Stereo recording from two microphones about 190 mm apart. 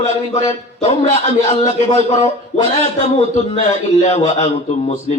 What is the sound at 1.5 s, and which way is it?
Speech, 35° left (ahead or behind).